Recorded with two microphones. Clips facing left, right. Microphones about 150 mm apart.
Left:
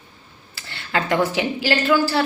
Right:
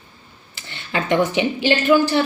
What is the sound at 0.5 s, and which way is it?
Speech, 20° right (ahead or behind).